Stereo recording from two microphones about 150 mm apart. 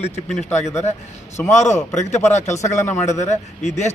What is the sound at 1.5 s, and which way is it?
A man's voice, 50° left (ahead or behind).